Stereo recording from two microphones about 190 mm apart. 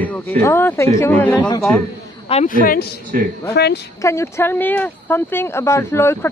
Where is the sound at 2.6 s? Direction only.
50° left (ahead or behind).